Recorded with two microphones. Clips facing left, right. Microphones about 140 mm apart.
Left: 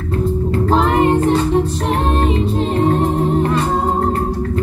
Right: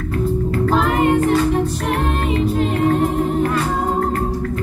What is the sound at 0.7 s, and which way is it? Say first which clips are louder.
Music: left 2 dB; 30° left (ahead or behind).